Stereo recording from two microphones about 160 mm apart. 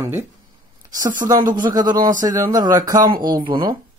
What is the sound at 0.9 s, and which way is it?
Speech, 55° right (ahead or behind).